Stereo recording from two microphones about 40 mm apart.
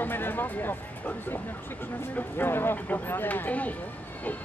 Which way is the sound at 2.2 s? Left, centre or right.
Left.